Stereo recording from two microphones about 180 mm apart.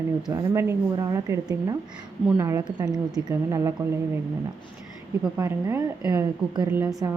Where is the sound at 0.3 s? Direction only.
20° right (ahead or behind).